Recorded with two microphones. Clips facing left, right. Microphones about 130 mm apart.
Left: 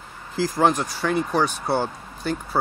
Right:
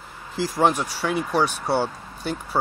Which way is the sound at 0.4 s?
Centre (ahead or behind).